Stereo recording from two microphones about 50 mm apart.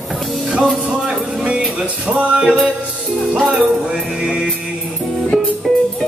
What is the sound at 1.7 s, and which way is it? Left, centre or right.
Music, right.